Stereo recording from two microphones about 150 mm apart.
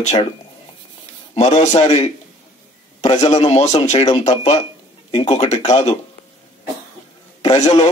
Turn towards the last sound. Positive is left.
turn(degrees=45)  # may be behind; listen again after turning